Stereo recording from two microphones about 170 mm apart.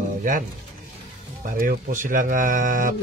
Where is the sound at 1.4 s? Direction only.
50° right (ahead or behind).